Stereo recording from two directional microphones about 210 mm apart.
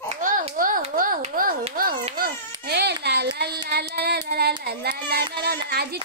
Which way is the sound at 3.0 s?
50° right (ahead or behind).